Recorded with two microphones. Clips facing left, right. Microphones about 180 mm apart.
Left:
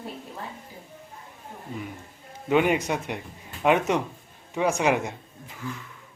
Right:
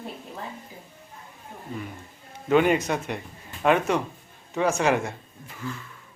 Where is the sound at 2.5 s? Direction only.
10° left (ahead or behind).